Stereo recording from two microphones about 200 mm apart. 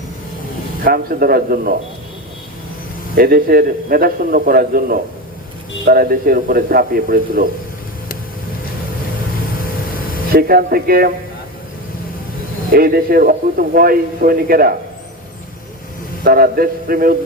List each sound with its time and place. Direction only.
0.9 s a man's voice: 50° right (ahead or behind)
3.2 s a man's voice: 45° right (ahead or behind)
10.3 s a man's voice: 50° right (ahead or behind)
12.7 s a man's voice: 50° right (ahead or behind)
16.2 s a man's voice: 50° right (ahead or behind)